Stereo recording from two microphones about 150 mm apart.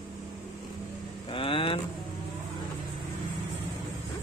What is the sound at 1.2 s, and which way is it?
Vehicle, 35° left (ahead or behind).